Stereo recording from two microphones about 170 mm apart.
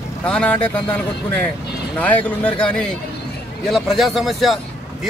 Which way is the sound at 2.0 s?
10° left (ahead or behind).